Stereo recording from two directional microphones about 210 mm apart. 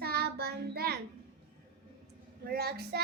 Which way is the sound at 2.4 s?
50° right (ahead or behind).